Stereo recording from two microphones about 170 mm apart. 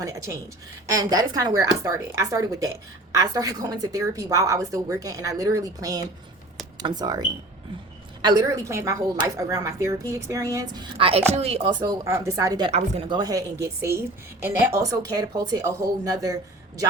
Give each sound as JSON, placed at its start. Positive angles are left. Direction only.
{"t": 0.0, "sound": "a woman's voice", "side_deg": -20}
{"t": 10.9, "sound": "a woman's voice", "side_deg": -35}
{"t": 12.7, "sound": "speech", "side_deg": -40}
{"t": 13.1, "sound": "a woman's voice", "side_deg": -25}